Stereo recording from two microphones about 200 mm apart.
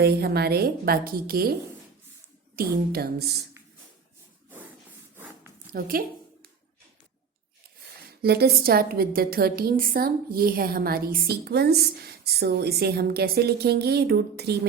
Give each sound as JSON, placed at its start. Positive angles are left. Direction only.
{"t": 0.0, "sound": "a woman's voice", "side_deg": -50}
{"t": 2.6, "sound": "a woman's voice", "side_deg": -50}
{"t": 5.1, "sound": "a sound", "side_deg": -10}
{"t": 5.7, "sound": "a woman's voice", "side_deg": -45}
{"t": 8.2, "sound": "a woman's voice", "side_deg": -50}